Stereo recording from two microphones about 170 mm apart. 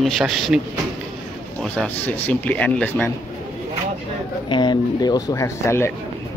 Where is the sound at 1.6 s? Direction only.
5° left (ahead or behind).